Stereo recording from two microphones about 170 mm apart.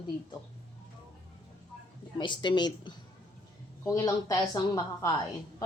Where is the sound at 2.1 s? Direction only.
25° left (ahead or behind).